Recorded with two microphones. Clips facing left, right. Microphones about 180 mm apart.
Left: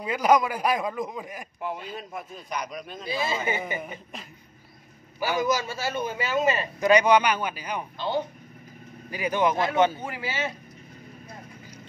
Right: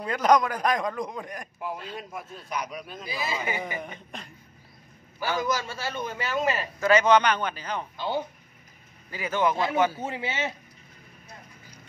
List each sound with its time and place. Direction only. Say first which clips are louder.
0.0 s a man's voice: even; 5° left (ahead or behind)
3.0 s speech: left 4 dB; 25° left (ahead or behind)
3.8 s a man's voice: left 1 dB; 5° left (ahead or behind)
6.8 s a man's voice: left 1 dB; 15° left (ahead or behind)
9.1 s a man's voice: left 2 dB; 15° left (ahead or behind)
10.0 s speech: right 1 dB; 25° right (ahead or behind)